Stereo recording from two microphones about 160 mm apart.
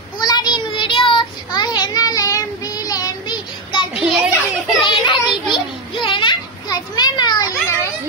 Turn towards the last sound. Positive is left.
turn(degrees=25)  # may be behind; listen again after turning